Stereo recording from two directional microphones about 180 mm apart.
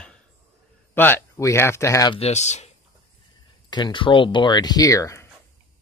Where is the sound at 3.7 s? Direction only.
25° left (ahead or behind).